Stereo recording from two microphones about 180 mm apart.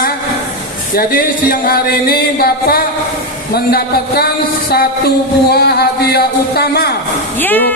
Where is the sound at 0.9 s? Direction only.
50° left (ahead or behind).